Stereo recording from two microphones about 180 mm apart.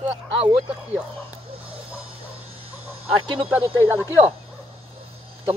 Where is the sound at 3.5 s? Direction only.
10° right (ahead or behind).